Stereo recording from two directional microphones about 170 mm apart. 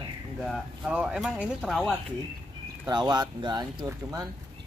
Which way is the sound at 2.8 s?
25° right (ahead or behind).